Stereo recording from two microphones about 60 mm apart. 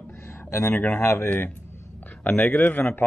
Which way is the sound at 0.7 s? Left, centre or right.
Left.